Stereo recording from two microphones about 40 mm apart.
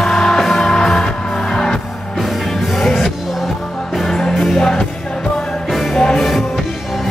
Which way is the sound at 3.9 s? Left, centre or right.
Centre.